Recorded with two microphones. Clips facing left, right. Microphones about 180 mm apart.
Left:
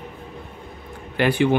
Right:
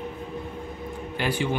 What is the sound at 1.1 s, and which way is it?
Speech, 65° left (ahead or behind).